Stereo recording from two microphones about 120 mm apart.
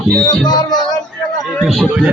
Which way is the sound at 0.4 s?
35° left (ahead or behind).